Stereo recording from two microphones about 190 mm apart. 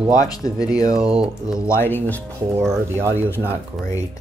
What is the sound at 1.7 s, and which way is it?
Speech, 10° left (ahead or behind).